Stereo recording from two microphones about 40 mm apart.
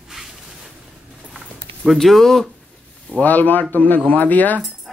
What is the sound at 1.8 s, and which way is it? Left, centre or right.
Speech, centre.